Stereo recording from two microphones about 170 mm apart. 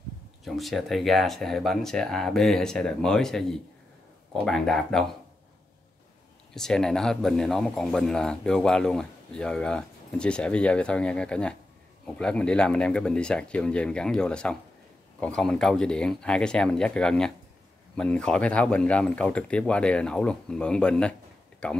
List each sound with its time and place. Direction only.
0.5 s speech: centre (ahead or behind)
6.5 s speech: 5° left (ahead or behind)